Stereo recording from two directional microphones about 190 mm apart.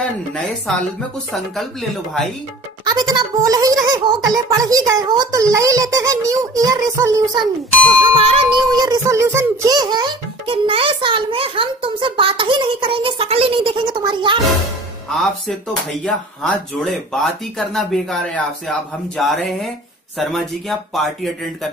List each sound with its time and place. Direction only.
1.3 s speech: centre (ahead or behind)
2.8 s a child's voice: 20° right (ahead or behind)
8.2 s a child's voice: 30° right (ahead or behind)
15.1 s speech: centre (ahead or behind)